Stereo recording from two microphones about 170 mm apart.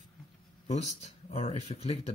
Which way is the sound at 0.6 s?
45° left (ahead or behind).